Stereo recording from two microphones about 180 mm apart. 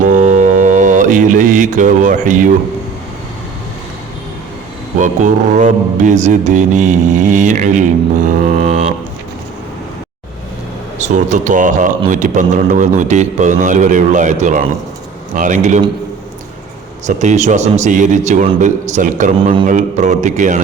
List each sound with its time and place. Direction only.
0.0 s mantra: 45° right (ahead or behind)
4.9 s a man's voice: 45° right (ahead or behind)
10.9 s a man's voice: 40° right (ahead or behind)
17.1 s a man's voice: 40° right (ahead or behind)